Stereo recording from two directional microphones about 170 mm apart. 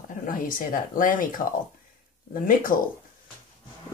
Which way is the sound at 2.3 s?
55° left (ahead or behind).